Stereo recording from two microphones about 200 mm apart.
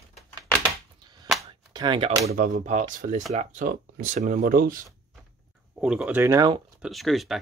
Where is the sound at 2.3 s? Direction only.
40° right (ahead or behind).